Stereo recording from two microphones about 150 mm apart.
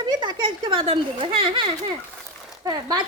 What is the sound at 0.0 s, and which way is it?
Speech, 30° right (ahead or behind).